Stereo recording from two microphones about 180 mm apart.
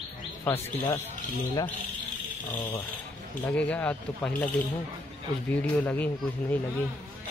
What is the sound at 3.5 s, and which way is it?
Speech, 10° left (ahead or behind).